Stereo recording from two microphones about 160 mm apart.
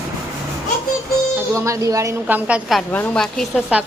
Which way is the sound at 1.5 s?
20° right (ahead or behind).